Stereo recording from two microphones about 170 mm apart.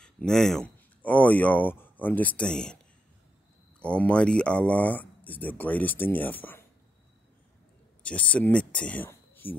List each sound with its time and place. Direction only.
0.0 s speech: 5° left (ahead or behind)
3.8 s speech: 5° left (ahead or behind)
8.0 s speech: 5° left (ahead or behind)